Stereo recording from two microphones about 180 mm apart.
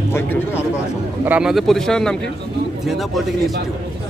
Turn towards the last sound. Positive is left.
turn(degrees=0)  # may be behind; listen again after turning